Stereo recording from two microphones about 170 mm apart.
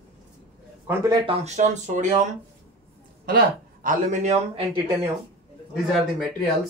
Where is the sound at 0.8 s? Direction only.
20° right (ahead or behind).